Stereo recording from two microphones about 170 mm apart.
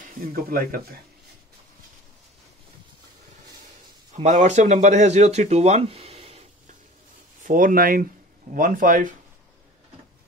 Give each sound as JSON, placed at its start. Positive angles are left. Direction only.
{"t": 0.0, "sound": "speech", "side_deg": -55}
{"t": 4.1, "sound": "speech", "side_deg": -45}
{"t": 7.4, "sound": "speech", "side_deg": -55}